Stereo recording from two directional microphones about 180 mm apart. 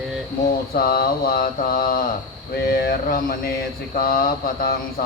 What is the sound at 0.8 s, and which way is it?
Mantra, 55° left (ahead or behind).